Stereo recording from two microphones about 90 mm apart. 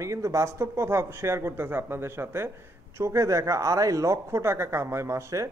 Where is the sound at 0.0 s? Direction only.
35° right (ahead or behind).